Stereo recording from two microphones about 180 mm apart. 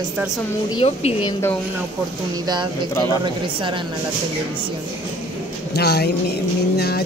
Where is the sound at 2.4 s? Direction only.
25° right (ahead or behind).